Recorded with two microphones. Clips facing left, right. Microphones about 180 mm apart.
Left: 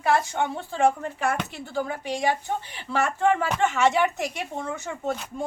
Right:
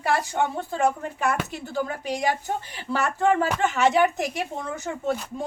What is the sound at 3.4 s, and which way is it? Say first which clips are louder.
Speech: even; 40° right (ahead or behind).